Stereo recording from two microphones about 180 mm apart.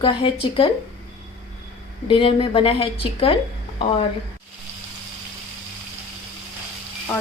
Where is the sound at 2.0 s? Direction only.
30° left (ahead or behind).